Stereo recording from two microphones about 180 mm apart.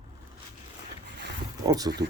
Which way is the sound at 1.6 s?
20° right (ahead or behind).